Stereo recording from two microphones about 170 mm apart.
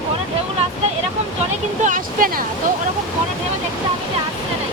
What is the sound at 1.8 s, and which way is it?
Speech, 50° right (ahead or behind).